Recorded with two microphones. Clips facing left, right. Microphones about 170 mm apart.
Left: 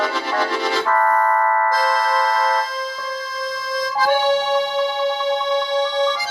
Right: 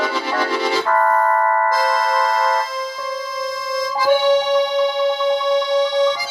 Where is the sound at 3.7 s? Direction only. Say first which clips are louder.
Right 2 dB; 10° right (ahead or behind).